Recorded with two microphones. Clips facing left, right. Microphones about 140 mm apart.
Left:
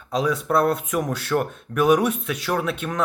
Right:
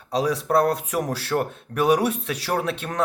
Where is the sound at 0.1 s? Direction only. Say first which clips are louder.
Even; 35° right (ahead or behind).